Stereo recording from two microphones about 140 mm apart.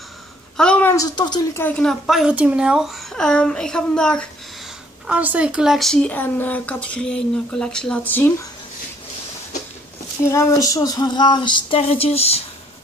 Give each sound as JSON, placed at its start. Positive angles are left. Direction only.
{"t": 0.6, "sound": "a sound", "side_deg": 10}
{"t": 0.9, "sound": "a woman's voice", "side_deg": 30}
{"t": 1.5, "sound": "a child's voice", "side_deg": 15}
{"t": 5.0, "sound": "speech", "side_deg": -10}
{"t": 10.2, "sound": "speech", "side_deg": 20}
{"t": 11.9, "sound": "speech", "side_deg": 45}